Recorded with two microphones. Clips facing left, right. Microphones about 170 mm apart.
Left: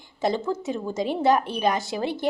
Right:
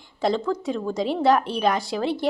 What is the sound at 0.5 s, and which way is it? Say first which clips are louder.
Speech: right 2 dB; 65° right (ahead or behind).